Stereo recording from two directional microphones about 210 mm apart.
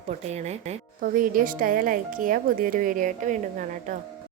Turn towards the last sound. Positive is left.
turn(degrees=-35)  # may be behind; listen again after turning